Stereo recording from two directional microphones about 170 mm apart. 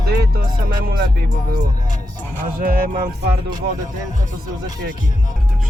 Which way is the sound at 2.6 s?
55° right (ahead or behind).